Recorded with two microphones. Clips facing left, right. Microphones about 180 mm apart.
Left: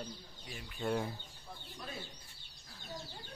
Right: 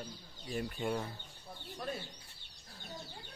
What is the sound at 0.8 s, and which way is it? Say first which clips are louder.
Speech: left 2 dB; 15° right (ahead or behind).